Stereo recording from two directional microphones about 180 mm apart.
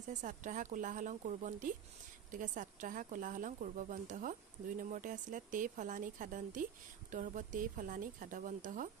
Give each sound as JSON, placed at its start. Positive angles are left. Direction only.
{"t": 0.1, "sound": "a woman's voice", "side_deg": -45}